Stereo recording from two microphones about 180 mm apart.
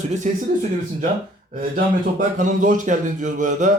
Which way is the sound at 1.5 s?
50° right (ahead or behind).